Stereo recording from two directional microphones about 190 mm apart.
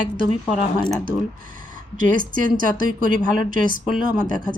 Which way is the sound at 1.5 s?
45° right (ahead or behind).